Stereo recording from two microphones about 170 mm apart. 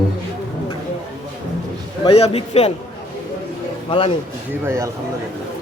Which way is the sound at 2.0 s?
35° left (ahead or behind).